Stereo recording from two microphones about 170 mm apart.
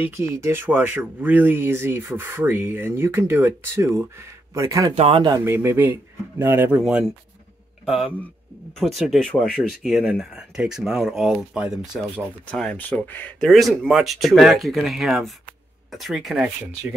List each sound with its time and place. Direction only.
0.0 s speech: 15° right (ahead or behind)
4.9 s speech: 35° right (ahead or behind)
5.4 s speech: 15° right (ahead or behind)